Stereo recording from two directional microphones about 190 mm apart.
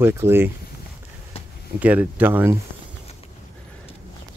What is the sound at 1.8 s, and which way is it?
Speech, 10° right (ahead or behind).